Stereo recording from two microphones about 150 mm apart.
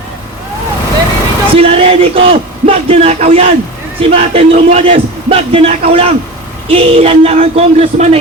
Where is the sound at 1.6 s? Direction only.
40° right (ahead or behind).